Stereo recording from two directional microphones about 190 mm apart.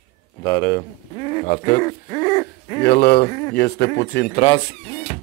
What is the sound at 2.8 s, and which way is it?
A man's voice, 55° left (ahead or behind).